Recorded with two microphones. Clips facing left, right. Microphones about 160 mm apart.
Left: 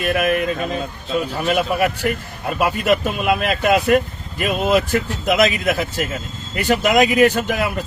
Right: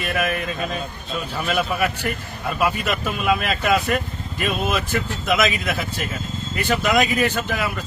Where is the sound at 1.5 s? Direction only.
45° left (ahead or behind).